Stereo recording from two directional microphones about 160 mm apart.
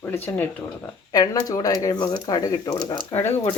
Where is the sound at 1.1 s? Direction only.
25° left (ahead or behind).